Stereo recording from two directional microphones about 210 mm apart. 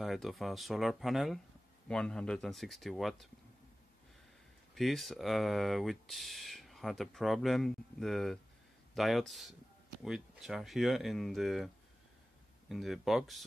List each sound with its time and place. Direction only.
0.0 s speech: centre (ahead or behind)
4.7 s speech: centre (ahead or behind)